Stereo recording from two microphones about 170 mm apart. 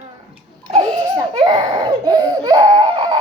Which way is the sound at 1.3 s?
30° right (ahead or behind).